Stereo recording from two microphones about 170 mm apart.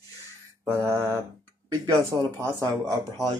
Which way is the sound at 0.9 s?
15° right (ahead or behind).